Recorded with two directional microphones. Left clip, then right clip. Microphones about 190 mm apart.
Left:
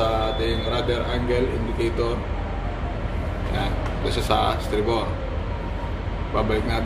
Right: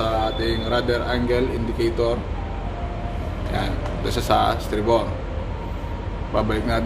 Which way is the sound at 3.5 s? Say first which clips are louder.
Right 2 dB; 35° right (ahead or behind).